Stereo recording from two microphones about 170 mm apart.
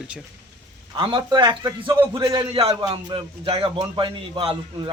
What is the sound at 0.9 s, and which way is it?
A man's voice, 30° right (ahead or behind).